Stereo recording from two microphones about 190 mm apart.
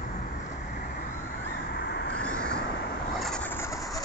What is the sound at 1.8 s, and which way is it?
Vehicle, 60° left (ahead or behind).